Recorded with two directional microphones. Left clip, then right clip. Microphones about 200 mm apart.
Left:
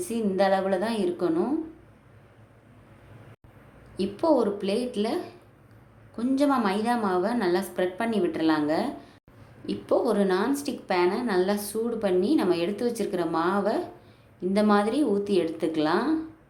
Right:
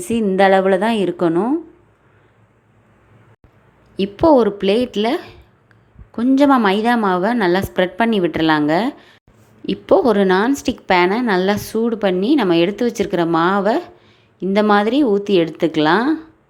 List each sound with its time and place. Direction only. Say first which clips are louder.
0.1 s a woman's voice: right 11 dB; 35° right (ahead or behind)
3.9 s a woman's voice: right 11 dB; 30° right (ahead or behind)